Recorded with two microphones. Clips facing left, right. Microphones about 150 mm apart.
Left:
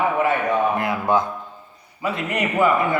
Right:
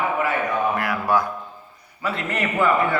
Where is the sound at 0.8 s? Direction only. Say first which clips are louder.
Left 1 dB; 20° left (ahead or behind).